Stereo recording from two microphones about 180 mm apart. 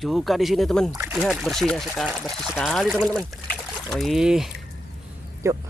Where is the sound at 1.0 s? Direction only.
10° right (ahead or behind).